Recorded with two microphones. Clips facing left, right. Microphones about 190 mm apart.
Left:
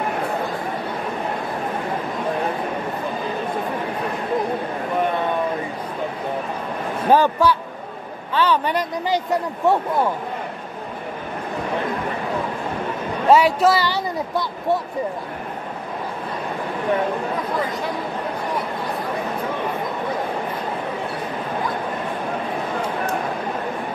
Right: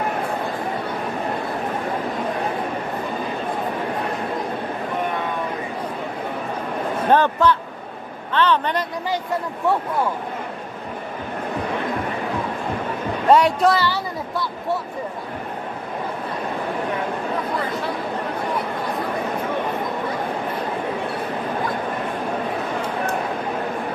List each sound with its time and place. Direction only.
7.1 s speech: 10° left (ahead or behind)
13.3 s speech: 5° left (ahead or behind)
13.8 s speech: 20° left (ahead or behind)